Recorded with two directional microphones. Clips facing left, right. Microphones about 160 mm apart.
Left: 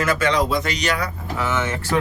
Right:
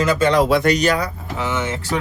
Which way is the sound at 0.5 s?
50° right (ahead or behind).